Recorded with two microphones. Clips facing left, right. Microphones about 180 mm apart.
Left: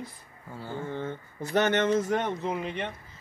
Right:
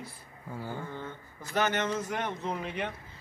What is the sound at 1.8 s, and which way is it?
Speech, 30° left (ahead or behind).